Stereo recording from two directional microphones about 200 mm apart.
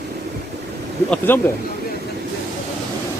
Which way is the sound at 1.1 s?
10° left (ahead or behind).